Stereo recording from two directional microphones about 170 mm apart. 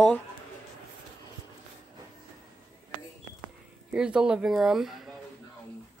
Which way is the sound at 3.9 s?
5° right (ahead or behind).